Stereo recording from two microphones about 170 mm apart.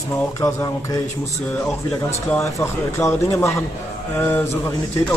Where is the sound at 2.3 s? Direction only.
15° left (ahead or behind).